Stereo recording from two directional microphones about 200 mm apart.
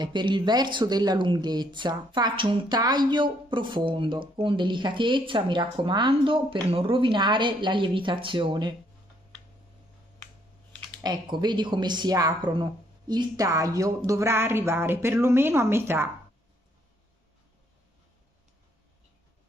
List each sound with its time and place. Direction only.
0.0 s speech: 25° right (ahead or behind)
10.1 s a sound: 10° left (ahead or behind)
11.0 s speech: 20° right (ahead or behind)